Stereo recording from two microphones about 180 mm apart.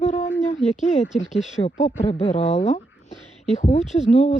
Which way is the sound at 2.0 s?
35° left (ahead or behind).